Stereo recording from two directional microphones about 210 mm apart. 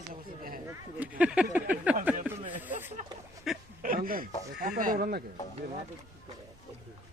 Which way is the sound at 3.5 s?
Centre (ahead or behind).